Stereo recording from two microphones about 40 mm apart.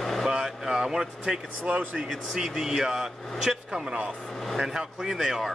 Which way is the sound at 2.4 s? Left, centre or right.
Centre.